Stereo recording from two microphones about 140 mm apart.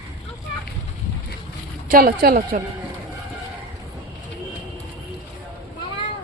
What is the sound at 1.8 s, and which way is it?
Speech, 90° right.